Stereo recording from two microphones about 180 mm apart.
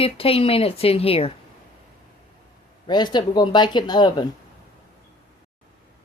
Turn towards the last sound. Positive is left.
turn(degrees=25)  # may be behind; listen again after turning